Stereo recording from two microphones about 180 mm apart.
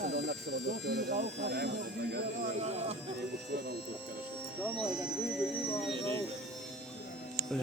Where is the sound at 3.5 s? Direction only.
60° right (ahead or behind).